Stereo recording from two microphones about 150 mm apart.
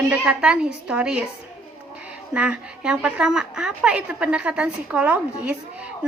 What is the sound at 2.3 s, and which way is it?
Speech, 10° right (ahead or behind).